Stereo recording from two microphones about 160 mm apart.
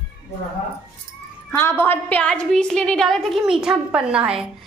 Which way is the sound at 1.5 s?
15° left (ahead or behind).